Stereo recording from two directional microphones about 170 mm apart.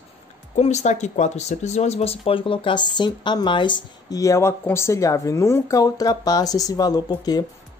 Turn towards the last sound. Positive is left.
turn(degrees=25)  # may be behind; listen again after turning